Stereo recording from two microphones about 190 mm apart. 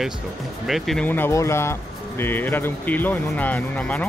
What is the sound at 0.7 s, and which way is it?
Speech, centre (ahead or behind).